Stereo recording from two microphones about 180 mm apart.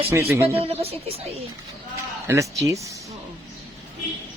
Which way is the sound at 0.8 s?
35° right (ahead or behind).